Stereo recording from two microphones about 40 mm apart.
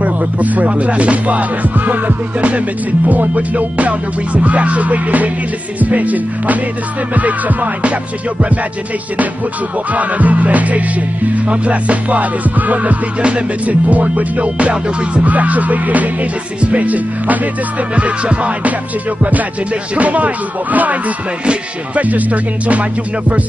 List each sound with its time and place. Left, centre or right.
0.0 s speech: right
9.9 s speech: right
20.0 s speech: right